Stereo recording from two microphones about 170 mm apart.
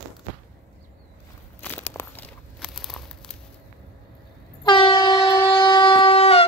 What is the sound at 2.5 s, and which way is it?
Crumpling, 5° left (ahead or behind).